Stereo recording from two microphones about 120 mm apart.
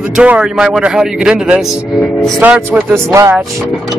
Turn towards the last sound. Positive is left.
turn(degrees=-25)  # may be behind; listen again after turning